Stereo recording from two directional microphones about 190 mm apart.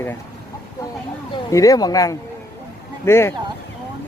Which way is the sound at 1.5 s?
15° left (ahead or behind).